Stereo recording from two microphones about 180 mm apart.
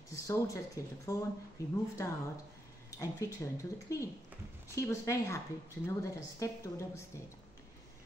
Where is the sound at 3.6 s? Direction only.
15° left (ahead or behind).